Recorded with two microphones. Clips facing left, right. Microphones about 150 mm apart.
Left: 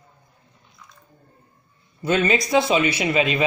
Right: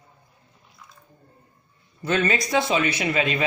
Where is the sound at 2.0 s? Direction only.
15° left (ahead or behind).